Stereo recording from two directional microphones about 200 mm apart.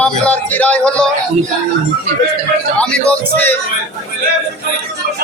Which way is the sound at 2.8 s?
5° left (ahead or behind).